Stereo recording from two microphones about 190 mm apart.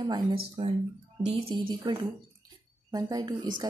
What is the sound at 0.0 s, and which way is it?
A woman's voice, 25° right (ahead or behind).